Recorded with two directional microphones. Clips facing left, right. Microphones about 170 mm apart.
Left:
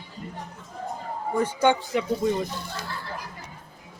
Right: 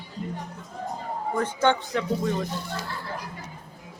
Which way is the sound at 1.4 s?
10° left (ahead or behind).